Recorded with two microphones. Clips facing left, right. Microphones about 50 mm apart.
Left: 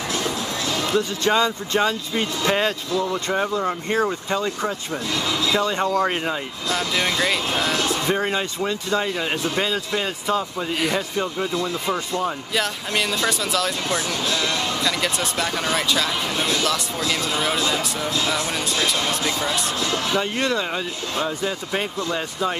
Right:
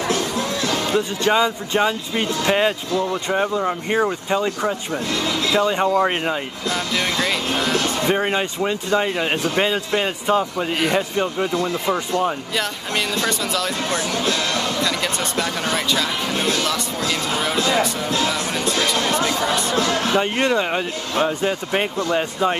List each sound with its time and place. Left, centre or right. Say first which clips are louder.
0.9 s speech: right 1 dB; centre
4.9 s speech: right 2 dB; right
5.6 s speech: right 3 dB; centre
7.2 s speech: right 1 dB; centre
8.0 s speech: right 3 dB; right
13.3 s speech: even; centre
13.8 s speech: right 2 dB; right
14.9 s speech: even; centre
16.3 s speech: right 1 dB; right
19.7 s speech: right 4 dB; right
20.2 s speech: right 4 dB; right